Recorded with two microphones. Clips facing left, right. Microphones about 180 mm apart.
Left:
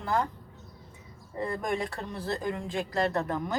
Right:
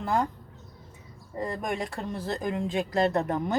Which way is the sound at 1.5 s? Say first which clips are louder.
Left 1 dB; 25° right (ahead or behind).